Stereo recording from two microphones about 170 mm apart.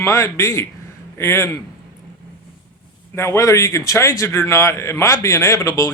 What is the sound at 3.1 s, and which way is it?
A man's voice, 15° left (ahead or behind).